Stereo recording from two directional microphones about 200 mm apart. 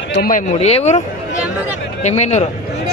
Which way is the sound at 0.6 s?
30° left (ahead or behind).